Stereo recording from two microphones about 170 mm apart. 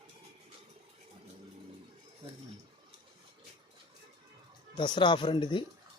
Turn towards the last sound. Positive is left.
turn(degrees=30)  # may be behind; listen again after turning